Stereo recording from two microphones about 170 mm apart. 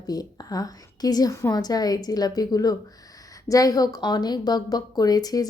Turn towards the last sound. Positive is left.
turn(degrees=25)  # may be behind; listen again after turning